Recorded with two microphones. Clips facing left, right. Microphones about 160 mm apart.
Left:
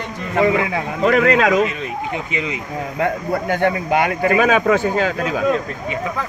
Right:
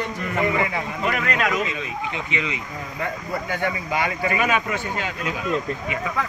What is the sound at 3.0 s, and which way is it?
Speech, 75° left (ahead or behind).